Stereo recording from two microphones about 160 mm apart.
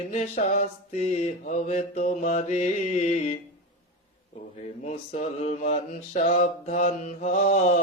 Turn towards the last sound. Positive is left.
turn(degrees=50)  # may be behind; listen again after turning